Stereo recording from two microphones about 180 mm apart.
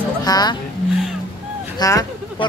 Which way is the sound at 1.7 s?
20° left (ahead or behind).